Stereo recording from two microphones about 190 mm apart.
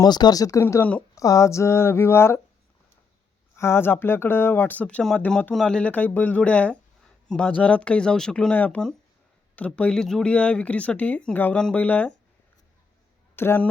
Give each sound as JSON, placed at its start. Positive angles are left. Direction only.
{"t": 0.0, "sound": "speech", "side_deg": 20}
{"t": 3.5, "sound": "speech", "side_deg": 15}
{"t": 13.3, "sound": "speech", "side_deg": 10}